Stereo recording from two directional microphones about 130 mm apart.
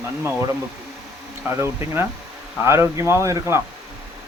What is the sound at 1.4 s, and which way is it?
Speech, 20° right (ahead or behind).